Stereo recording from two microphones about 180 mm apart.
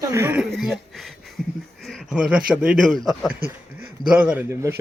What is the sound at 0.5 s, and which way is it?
Speech, centre (ahead or behind).